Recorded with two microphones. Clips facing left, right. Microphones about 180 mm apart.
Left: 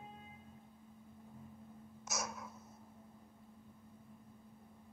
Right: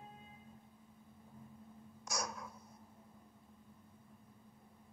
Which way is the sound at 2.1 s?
5° left (ahead or behind).